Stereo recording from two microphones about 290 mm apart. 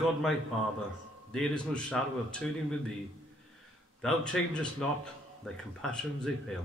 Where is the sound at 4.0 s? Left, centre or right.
Centre.